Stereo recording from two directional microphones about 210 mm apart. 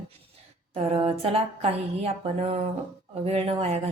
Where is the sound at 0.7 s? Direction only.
25° right (ahead or behind).